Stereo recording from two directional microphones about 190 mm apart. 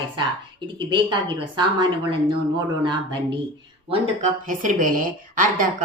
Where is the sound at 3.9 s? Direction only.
40° right (ahead or behind).